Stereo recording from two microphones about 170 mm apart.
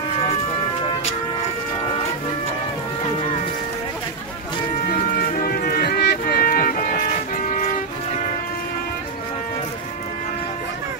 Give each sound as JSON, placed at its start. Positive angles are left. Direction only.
{"t": 5.1, "sound": "music", "side_deg": 60}